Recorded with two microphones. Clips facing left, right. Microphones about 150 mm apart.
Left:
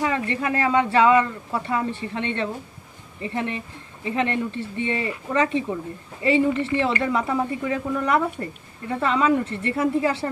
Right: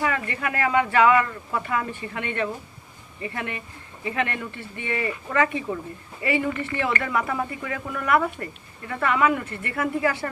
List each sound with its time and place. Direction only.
0.0 s speech: 25° left (ahead or behind)